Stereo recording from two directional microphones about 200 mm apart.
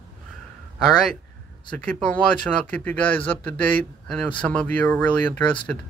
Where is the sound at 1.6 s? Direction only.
5° left (ahead or behind).